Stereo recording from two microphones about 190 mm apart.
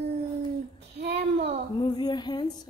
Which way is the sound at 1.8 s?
20° left (ahead or behind).